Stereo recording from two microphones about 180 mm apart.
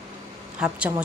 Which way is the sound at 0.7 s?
5° right (ahead or behind).